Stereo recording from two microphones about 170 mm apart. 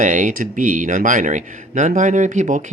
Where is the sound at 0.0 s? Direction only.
50° right (ahead or behind).